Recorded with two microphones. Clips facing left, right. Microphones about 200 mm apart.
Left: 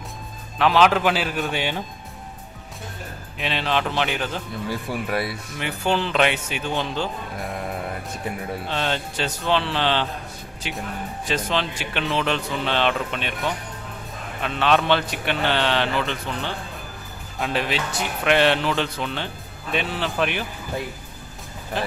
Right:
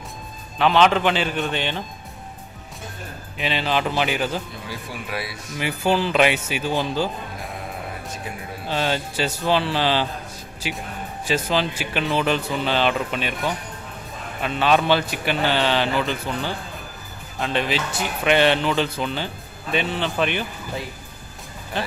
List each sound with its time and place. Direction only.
0.6 s speech: centre (ahead or behind)
3.3 s speech: centre (ahead or behind)
4.6 s speech: 55° left (ahead or behind)
5.6 s speech: 5° right (ahead or behind)
8.6 s speech: 5° right (ahead or behind)
21.7 s speech: centre (ahead or behind)